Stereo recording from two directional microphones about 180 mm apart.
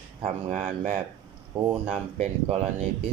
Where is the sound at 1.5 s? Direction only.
30° right (ahead or behind).